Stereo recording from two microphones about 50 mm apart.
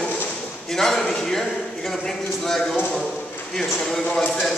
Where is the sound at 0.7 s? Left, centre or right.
Centre.